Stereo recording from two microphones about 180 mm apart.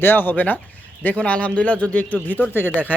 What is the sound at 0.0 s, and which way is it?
Speech, 10° left (ahead or behind).